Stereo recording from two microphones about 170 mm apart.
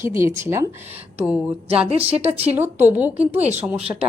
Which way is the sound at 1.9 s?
35° right (ahead or behind).